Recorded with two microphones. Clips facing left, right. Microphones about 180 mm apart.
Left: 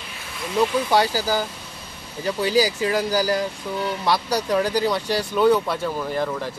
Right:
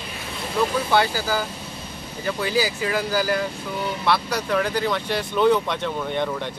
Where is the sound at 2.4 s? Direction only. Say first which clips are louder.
Left 4 dB; 40° left (ahead or behind).